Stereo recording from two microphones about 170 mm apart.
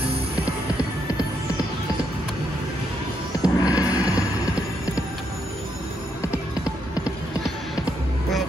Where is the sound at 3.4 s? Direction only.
20° left (ahead or behind).